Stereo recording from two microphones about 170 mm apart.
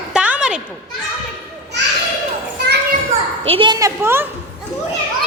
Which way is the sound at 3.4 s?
30° right (ahead or behind).